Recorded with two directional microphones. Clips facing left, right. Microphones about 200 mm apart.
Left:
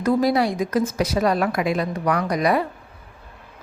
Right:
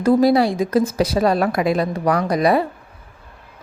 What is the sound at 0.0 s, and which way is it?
Speech, 30° right (ahead or behind).